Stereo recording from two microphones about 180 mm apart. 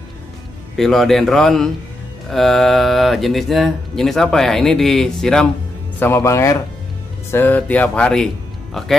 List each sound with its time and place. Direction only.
0.7 s speech: centre (ahead or behind)